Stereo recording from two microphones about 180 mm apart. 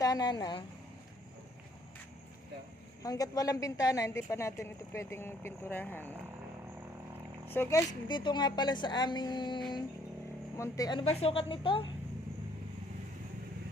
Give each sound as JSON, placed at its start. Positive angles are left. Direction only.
{"t": 0.0, "sound": "speech", "side_deg": 20}
{"t": 3.0, "sound": "a woman's voice", "side_deg": 20}
{"t": 7.4, "sound": "a woman's voice", "side_deg": 10}
{"t": 10.6, "sound": "a woman's voice", "side_deg": 20}